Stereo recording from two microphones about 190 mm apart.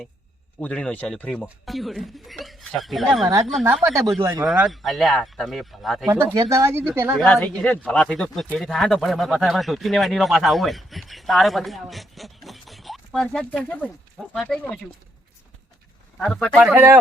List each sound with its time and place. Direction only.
0.6 s speech: 5° left (ahead or behind)
3.8 s speech: 15° right (ahead or behind); by 6.1 s centre (ahead or behind)
6.1 s speech: 15° right (ahead or behind)
7.3 s speech: 5° left (ahead or behind)
16.1 s speech: 5° left (ahead or behind)